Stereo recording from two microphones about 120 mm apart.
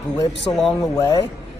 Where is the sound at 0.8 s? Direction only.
25° left (ahead or behind).